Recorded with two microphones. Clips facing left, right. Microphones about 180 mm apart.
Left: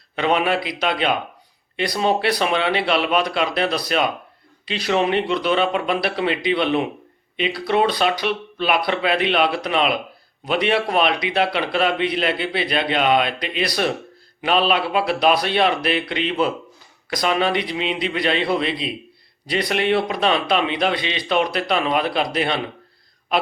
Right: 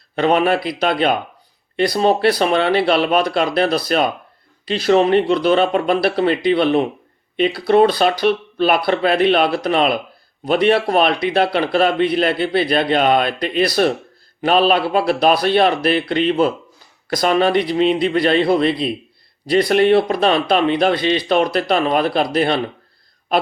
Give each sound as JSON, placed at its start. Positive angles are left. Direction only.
{"t": 0.2, "sound": "a man's voice", "side_deg": -40}